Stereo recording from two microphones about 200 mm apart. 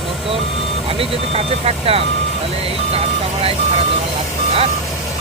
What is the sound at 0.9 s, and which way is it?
Speech, 30° right (ahead or behind).